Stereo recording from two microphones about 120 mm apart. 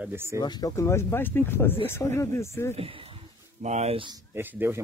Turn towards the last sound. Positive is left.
turn(degrees=-15)  # may be behind; listen again after turning